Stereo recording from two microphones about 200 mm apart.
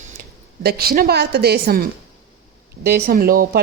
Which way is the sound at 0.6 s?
50° right (ahead or behind).